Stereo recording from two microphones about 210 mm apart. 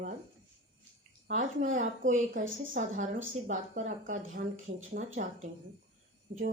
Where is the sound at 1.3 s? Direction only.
35° right (ahead or behind).